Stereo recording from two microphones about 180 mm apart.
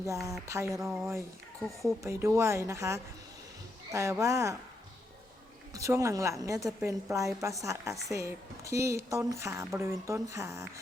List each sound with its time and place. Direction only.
0.1 s speech: 15° right (ahead or behind)
5.7 s speech: 15° right (ahead or behind)